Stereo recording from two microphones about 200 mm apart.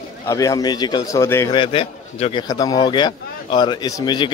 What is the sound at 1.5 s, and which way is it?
Speech, 25° left (ahead or behind).